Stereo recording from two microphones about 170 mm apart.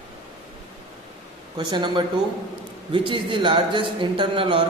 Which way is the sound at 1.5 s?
25° right (ahead or behind).